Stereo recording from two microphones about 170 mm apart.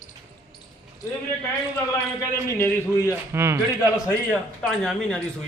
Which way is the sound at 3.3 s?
15° right (ahead or behind).